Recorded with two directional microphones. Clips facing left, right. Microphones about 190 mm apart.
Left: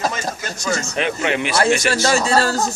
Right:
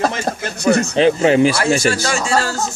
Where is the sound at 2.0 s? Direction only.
35° left (ahead or behind).